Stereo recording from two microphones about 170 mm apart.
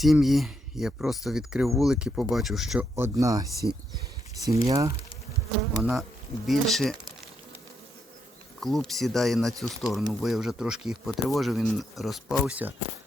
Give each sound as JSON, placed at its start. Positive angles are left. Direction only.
{"t": 0.0, "sound": "speech", "side_deg": 0}
{"t": 2.9, "sound": "speech", "side_deg": -20}
{"t": 5.8, "sound": "speech", "side_deg": 0}
{"t": 8.6, "sound": "speech", "side_deg": 0}